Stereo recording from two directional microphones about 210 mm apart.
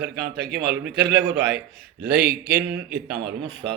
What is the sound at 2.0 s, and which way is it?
Speech, 45° right (ahead or behind).